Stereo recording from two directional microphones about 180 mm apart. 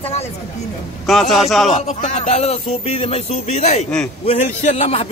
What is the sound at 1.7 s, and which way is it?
Speech, 40° left (ahead or behind).